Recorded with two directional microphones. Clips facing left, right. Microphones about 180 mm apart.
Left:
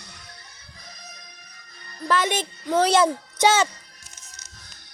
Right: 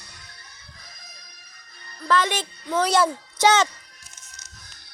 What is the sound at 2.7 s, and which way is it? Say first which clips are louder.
Speech: left 2 dB; 30° left (ahead or behind).